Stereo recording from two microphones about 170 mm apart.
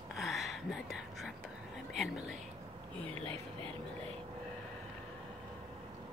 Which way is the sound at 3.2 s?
30° right (ahead or behind).